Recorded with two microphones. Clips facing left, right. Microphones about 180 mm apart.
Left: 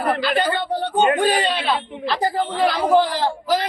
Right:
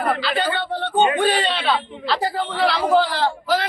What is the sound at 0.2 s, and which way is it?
Speech, 45° left (ahead or behind).